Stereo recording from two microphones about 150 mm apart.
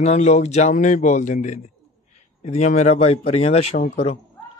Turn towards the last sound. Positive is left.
turn(degrees=45)  # may be behind; listen again after turning